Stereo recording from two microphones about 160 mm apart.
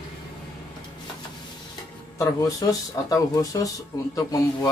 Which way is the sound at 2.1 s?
20° left (ahead or behind).